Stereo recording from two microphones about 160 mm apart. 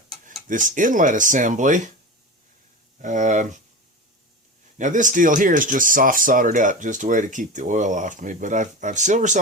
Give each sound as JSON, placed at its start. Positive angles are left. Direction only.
{"t": 0.4, "sound": "speech", "side_deg": -55}
{"t": 3.0, "sound": "speech", "side_deg": -50}
{"t": 4.8, "sound": "speech", "side_deg": -50}